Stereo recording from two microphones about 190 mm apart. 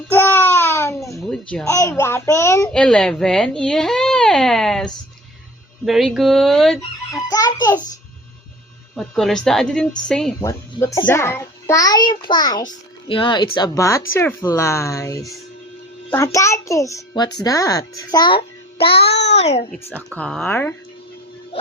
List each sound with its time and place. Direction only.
0.1 s babbling: 10° left (ahead or behind)
1.6 s a child's voice: 15° left (ahead or behind)
2.7 s speech: 5° left (ahead or behind)
7.1 s fowl: 20° left (ahead or behind)
9.0 s speech: centre (ahead or behind)
10.4 s a child's voice: 15° left (ahead or behind)
18.9 s child singing: 60° left (ahead or behind)
19.4 s a child's voice: 35° left (ahead or behind)
20.1 s a child's voice: 5° left (ahead or behind)